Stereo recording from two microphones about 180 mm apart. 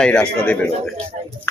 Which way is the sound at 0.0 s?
5° left (ahead or behind).